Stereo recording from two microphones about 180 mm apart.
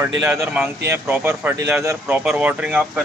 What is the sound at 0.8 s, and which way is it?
Speech, 15° right (ahead or behind).